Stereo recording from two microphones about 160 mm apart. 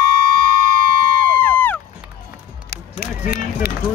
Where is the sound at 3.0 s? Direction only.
70° left (ahead or behind).